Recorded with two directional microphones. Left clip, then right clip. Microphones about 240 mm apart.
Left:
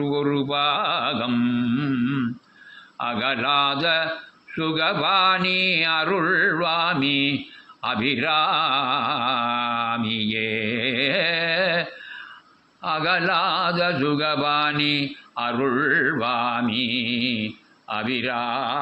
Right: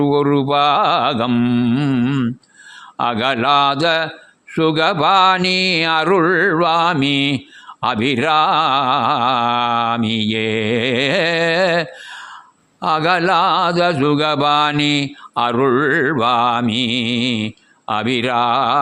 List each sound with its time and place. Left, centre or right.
0.0 s mantra: right